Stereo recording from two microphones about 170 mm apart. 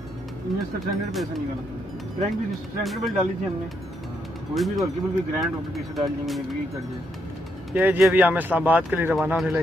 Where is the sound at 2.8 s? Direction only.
Centre (ahead or behind).